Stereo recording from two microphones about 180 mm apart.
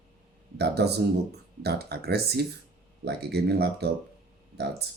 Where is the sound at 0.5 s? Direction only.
65° right (ahead or behind).